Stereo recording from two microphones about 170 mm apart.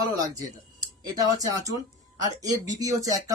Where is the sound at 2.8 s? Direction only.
20° right (ahead or behind).